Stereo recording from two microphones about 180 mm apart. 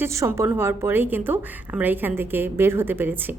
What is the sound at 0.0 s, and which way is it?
A woman's voice, 15° right (ahead or behind).